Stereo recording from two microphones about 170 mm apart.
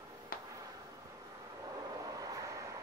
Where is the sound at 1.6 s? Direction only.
20° right (ahead or behind).